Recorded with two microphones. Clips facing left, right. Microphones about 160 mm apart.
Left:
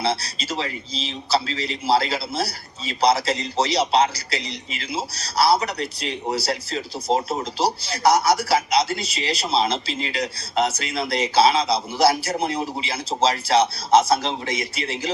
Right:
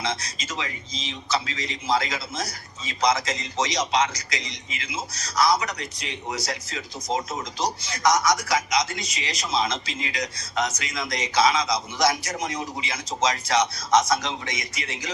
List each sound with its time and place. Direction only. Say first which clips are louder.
0.0 s a man's voice: left 5 dB; 35° left (ahead or behind)